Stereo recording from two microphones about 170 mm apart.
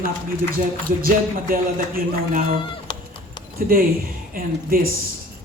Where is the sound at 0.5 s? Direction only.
60° right (ahead or behind).